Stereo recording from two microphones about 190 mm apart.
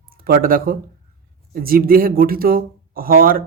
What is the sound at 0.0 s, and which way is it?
Speech, 50° right (ahead or behind).